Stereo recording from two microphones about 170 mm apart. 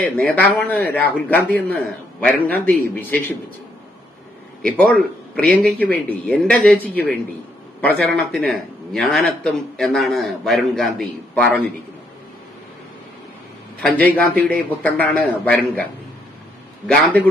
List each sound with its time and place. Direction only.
0.0 s speech: 10° left (ahead or behind)
4.6 s a man's voice: 5° left (ahead or behind)
13.9 s speech: 10° left (ahead or behind)
16.8 s speech: 10° left (ahead or behind)